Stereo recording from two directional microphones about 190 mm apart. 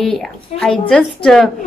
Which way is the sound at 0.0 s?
Centre (ahead or behind).